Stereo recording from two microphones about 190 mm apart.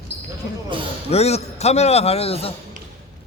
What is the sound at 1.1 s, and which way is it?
A man's voice, 35° left (ahead or behind).